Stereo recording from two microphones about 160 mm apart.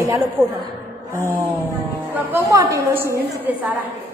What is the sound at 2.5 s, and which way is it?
A woman's voice, 20° right (ahead or behind).